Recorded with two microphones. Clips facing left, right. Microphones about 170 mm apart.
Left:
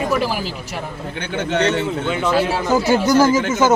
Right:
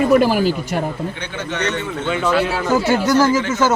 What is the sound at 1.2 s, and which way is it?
Speech, 50° left (ahead or behind).